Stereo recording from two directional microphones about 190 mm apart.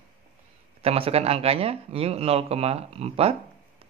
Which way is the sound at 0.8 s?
30° right (ahead or behind).